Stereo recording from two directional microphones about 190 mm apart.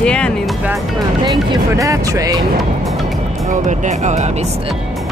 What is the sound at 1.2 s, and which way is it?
Speech, 20° right (ahead or behind).